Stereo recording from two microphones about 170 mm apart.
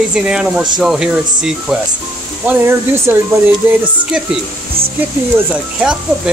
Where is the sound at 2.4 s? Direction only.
15° right (ahead or behind).